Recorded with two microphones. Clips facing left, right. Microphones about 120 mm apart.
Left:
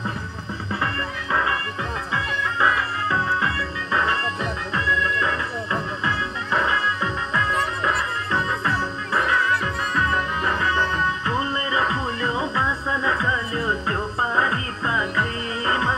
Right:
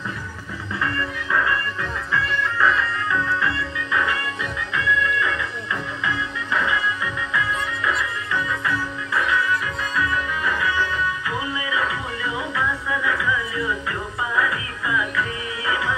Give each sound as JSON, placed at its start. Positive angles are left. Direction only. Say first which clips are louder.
{"t": 1.3, "sound": "music", "louder": "right 1 dB", "side_deg": 20}